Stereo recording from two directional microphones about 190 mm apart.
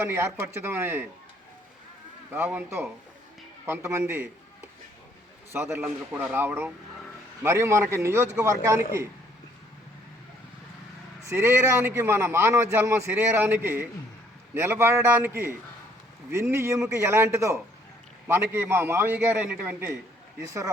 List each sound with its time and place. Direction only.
0.0 s a man's voice: 15° right (ahead or behind)
2.3 s a man's voice: 10° right (ahead or behind)
5.5 s a man's voice: 10° right (ahead or behind)
11.3 s a man's voice: 15° right (ahead or behind)